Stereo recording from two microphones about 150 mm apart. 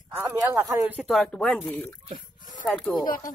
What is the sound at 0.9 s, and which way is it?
Speech, 5° right (ahead or behind).